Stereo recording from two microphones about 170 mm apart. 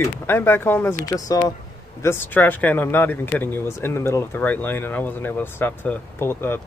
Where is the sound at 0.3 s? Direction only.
15° left (ahead or behind).